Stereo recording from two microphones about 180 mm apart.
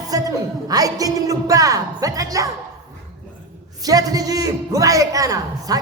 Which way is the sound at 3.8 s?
20° right (ahead or behind).